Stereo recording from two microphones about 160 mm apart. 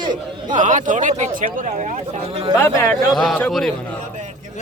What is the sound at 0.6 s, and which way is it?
Speech, 50° right (ahead or behind).